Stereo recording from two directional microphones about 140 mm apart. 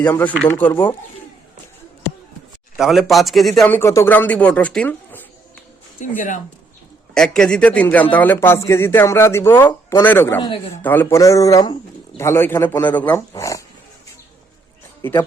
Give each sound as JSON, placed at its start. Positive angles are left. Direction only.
{"t": 0.4, "sound": "speech", "side_deg": 10}
{"t": 2.7, "sound": "speech", "side_deg": 0}
{"t": 3.7, "sound": "speech", "side_deg": 20}
{"t": 6.0, "sound": "speech", "side_deg": 65}
{"t": 7.1, "sound": "speech", "side_deg": 5}
{"t": 13.3, "sound": "speech", "side_deg": 25}